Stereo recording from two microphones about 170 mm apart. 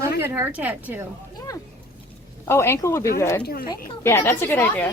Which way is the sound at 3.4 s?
60° left (ahead or behind).